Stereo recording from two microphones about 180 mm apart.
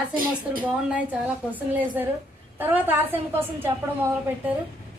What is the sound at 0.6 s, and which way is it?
A woman's voice, 10° right (ahead or behind).